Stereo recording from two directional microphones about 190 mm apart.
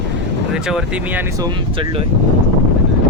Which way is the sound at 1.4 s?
25° right (ahead or behind).